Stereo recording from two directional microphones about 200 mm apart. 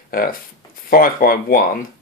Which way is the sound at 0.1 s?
45° left (ahead or behind).